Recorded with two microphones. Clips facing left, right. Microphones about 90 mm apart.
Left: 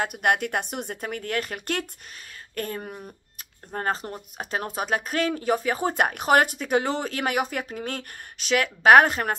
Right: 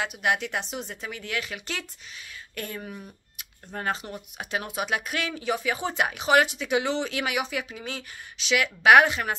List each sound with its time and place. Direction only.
0.0 s speech: 50° left (ahead or behind)